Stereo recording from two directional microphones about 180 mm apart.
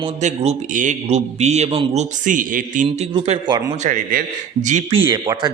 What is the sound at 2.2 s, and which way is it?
Speech, 45° right (ahead or behind).